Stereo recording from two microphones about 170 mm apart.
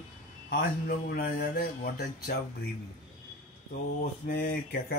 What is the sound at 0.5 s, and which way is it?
Speech, 60° left (ahead or behind).